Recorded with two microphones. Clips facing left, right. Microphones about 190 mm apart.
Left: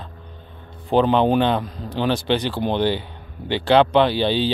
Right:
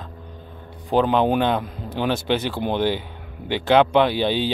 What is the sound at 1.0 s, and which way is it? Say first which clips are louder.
Speech: left 2 dB; 5° right (ahead or behind).